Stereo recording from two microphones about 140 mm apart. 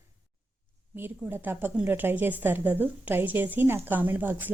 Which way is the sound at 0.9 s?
15° right (ahead or behind).